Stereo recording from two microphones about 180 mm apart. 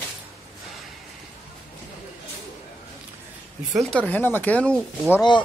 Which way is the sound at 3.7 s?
5° left (ahead or behind).